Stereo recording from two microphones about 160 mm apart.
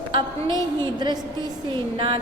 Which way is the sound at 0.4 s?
20° left (ahead or behind).